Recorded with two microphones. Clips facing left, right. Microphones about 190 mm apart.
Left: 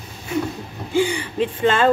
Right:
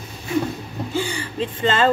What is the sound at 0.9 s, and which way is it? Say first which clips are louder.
Speech: left 7 dB; 15° left (ahead or behind).